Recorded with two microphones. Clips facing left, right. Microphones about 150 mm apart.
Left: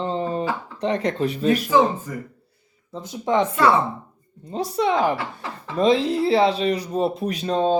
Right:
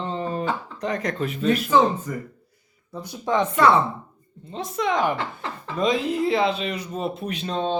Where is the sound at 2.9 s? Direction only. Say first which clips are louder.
Left 2 dB; 20° left (ahead or behind).